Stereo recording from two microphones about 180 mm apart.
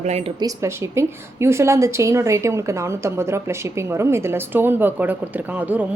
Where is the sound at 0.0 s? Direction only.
35° right (ahead or behind).